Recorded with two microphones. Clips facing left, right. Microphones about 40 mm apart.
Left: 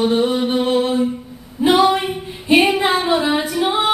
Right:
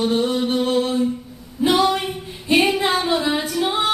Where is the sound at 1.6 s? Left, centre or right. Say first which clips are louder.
Left 4 dB; centre.